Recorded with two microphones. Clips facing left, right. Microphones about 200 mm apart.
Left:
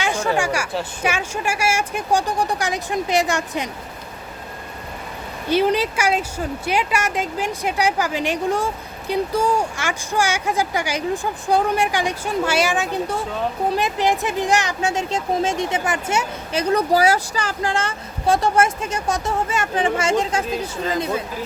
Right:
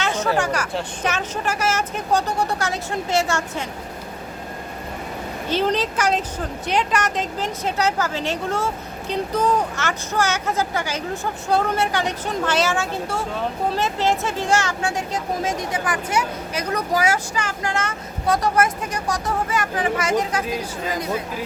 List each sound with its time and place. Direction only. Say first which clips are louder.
0.0 s a sound: left 1 dB; 10° left (ahead or behind)
0.3 s speech: even; 10° left (ahead or behind)
5.5 s speech: left 3 dB; 10° left (ahead or behind); by 20.4 s 25° left (ahead or behind)